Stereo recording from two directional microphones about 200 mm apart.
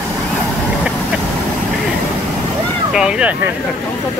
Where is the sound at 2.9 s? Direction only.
5° right (ahead or behind).